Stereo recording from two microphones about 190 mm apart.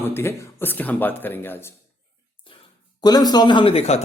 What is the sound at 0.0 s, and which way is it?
Speech, 10° left (ahead or behind).